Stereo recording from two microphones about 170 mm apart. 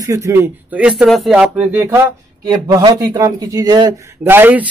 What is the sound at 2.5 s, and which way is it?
Speech, 25° right (ahead or behind).